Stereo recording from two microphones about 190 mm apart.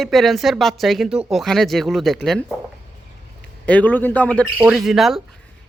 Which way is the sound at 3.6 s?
5° left (ahead or behind).